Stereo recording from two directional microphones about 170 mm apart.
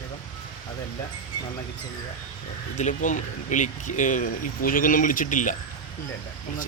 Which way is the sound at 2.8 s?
45° left (ahead or behind).